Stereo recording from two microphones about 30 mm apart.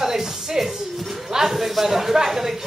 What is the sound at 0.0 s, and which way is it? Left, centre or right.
Music, centre.